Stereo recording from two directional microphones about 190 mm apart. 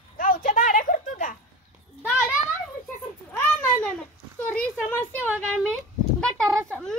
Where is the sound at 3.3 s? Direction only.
5° left (ahead or behind).